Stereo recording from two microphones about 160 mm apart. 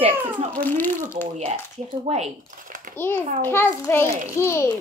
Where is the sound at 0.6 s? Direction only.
10° left (ahead or behind).